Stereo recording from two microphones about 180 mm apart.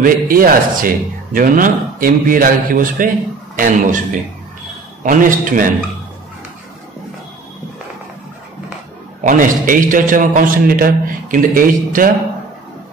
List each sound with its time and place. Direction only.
0.0 s a man's voice: 50° right (ahead or behind)
9.2 s a man's voice: 50° right (ahead or behind)